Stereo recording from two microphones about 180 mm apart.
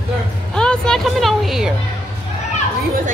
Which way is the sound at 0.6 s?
5° left (ahead or behind).